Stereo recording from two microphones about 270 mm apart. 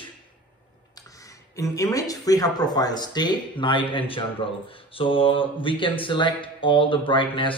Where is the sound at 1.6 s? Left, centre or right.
Centre.